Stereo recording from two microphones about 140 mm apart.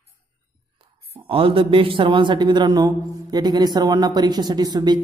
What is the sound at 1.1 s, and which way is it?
A man's voice, 40° right (ahead or behind).